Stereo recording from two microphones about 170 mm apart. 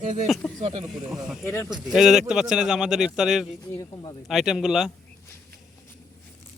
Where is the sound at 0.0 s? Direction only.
45° right (ahead or behind).